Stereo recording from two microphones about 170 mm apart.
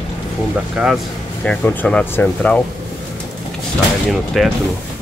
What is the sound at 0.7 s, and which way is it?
Speech, 5° right (ahead or behind).